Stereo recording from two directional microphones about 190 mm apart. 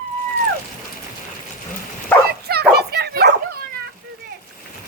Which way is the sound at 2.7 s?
55° right (ahead or behind).